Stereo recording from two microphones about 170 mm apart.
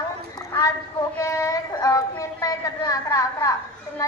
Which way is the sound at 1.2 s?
20° left (ahead or behind).